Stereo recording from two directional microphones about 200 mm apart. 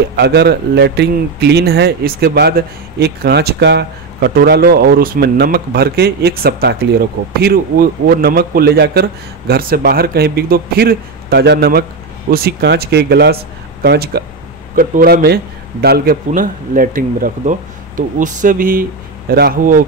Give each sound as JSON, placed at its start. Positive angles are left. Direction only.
{"t": 0.1, "sound": "a man's voice", "side_deg": -55}